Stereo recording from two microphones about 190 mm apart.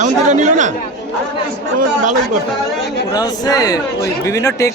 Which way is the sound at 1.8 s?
45° right (ahead or behind).